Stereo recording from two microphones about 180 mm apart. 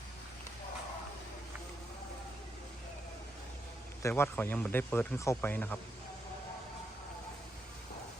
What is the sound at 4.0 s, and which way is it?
Speech, 10° left (ahead or behind).